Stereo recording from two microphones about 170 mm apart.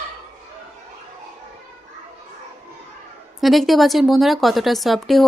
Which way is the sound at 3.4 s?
Centre (ahead or behind).